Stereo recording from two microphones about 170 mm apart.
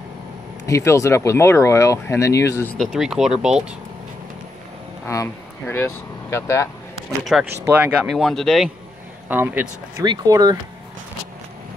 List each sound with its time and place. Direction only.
0.7 s speech: 20° left (ahead or behind)
2.8 s speech: centre (ahead or behind)
5.0 s speech: 15° left (ahead or behind)
7.3 s speech: centre (ahead or behind)
9.3 s speech: 10° right (ahead or behind)
9.9 s speech: 20° right (ahead or behind)